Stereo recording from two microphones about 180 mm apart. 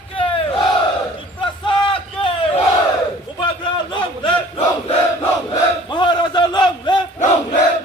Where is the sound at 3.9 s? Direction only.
30° left (ahead or behind).